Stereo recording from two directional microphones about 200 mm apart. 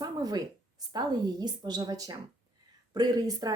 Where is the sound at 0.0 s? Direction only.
20° right (ahead or behind).